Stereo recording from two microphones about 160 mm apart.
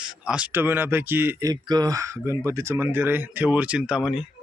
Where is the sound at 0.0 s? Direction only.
5° right (ahead or behind).